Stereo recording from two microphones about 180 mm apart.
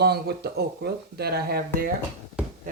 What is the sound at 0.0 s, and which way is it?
Speech, 65° right (ahead or behind).